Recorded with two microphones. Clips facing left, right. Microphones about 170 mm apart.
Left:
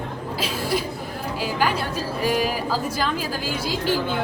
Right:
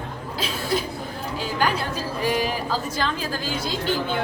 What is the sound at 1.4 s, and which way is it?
A woman's voice, 5° left (ahead or behind).